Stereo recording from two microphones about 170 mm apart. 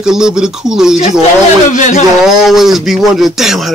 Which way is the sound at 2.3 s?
Centre (ahead or behind).